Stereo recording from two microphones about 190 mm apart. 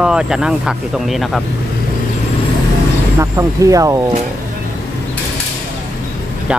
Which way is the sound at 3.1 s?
15° right (ahead or behind).